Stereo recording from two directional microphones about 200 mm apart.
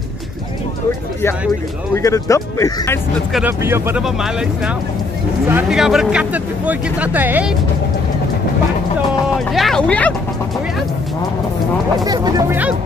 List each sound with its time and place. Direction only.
2.0 s speech: 15° left (ahead or behind)
3.3 s speech: 10° right (ahead or behind)
9.5 s speech: centre (ahead or behind)
12.0 s speech: 20° right (ahead or behind)